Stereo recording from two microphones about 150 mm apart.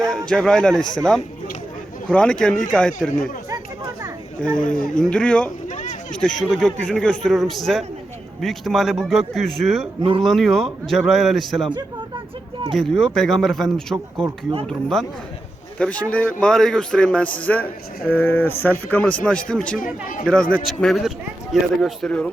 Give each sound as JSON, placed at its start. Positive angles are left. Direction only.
{"t": 0.1, "sound": "a man's voice", "side_deg": 5}
{"t": 4.4, "sound": "a man's voice", "side_deg": 5}
{"t": 5.6, "sound": "a sound", "side_deg": 55}
{"t": 6.4, "sound": "a man's voice", "side_deg": 0}
{"t": 10.0, "sound": "speech", "side_deg": -35}
{"t": 10.2, "sound": "a man's voice", "side_deg": 0}
{"t": 12.7, "sound": "a man's voice", "side_deg": 0}
{"t": 19.8, "sound": "speech", "side_deg": 65}
{"t": 20.2, "sound": "a man's voice", "side_deg": 5}